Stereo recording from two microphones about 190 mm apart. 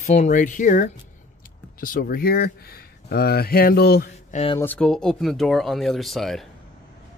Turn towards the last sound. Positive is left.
turn(degrees=0)  # may be behind; listen again after turning